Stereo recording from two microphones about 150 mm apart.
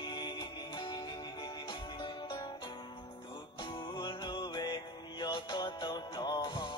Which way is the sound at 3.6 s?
30° left (ahead or behind).